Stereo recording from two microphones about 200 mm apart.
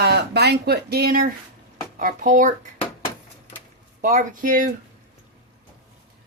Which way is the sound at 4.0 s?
40° right (ahead or behind).